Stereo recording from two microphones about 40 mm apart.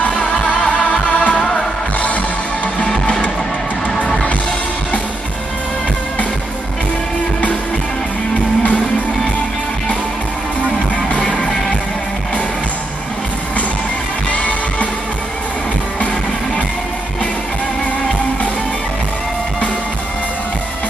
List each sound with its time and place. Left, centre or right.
0.2 s music: left
11.2 s music: centre
14.3 s music: left